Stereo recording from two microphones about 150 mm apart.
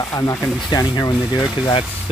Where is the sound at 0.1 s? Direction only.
20° left (ahead or behind).